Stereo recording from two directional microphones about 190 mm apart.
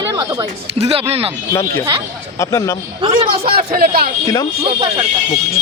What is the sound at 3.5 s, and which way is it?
Speech, 50° right (ahead or behind).